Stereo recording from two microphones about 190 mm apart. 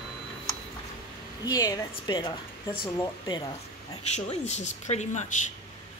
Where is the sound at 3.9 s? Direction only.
35° left (ahead or behind).